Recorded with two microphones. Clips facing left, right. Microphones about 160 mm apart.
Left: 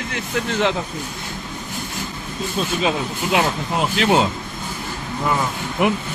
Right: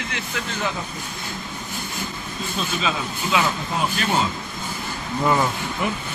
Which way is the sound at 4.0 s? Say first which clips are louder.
Left 7 dB; 80° left.